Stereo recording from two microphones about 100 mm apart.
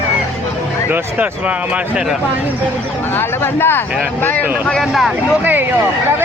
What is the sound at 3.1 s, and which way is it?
Speech, 20° left (ahead or behind).